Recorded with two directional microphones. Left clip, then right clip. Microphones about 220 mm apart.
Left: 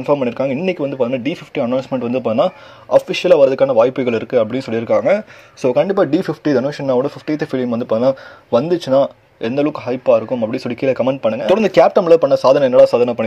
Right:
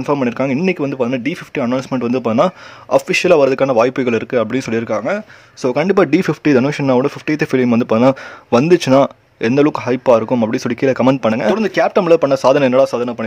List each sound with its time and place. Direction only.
0.0 s speech: 15° right (ahead or behind)
4.9 s speech: 5° right (ahead or behind)
5.7 s speech: 15° right (ahead or behind)
8.6 s speech: 55° right (ahead or behind)
8.9 s speech: 25° right (ahead or behind)
11.5 s speech: centre (ahead or behind)
11.9 s speech: 15° right (ahead or behind)